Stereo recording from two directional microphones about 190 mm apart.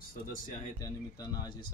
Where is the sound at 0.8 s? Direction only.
20° left (ahead or behind).